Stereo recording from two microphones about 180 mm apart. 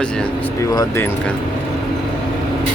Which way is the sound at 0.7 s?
15° left (ahead or behind).